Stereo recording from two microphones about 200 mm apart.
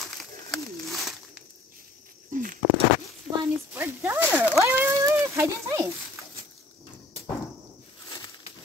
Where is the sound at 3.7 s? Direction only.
10° right (ahead or behind).